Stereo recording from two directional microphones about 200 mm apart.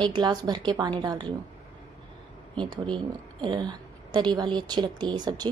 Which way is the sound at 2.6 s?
25° right (ahead or behind).